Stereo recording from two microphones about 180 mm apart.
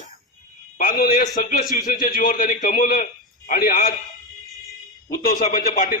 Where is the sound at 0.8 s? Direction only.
55° left (ahead or behind).